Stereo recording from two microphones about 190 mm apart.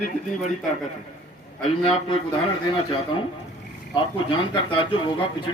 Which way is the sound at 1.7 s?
30° left (ahead or behind).